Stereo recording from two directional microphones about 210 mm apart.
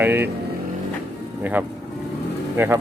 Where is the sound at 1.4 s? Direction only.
10° right (ahead or behind).